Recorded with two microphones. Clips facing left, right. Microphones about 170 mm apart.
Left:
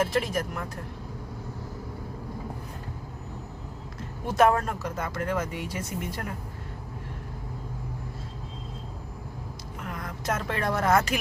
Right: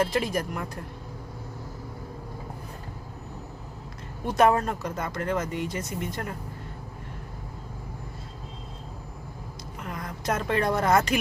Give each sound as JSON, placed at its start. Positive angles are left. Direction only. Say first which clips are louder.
{"t": 0.0, "sound": "speech", "louder": "right 1 dB", "side_deg": 0}
{"t": 4.3, "sound": "speech", "louder": "right 1 dB", "side_deg": 0}
{"t": 9.9, "sound": "vehicle", "louder": "right 2 dB", "side_deg": 0}
{"t": 10.8, "sound": "speech", "louder": "left 1 dB", "side_deg": 0}